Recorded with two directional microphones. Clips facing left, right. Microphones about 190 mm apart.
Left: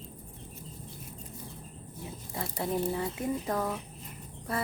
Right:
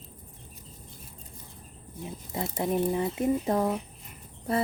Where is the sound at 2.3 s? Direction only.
20° right (ahead or behind).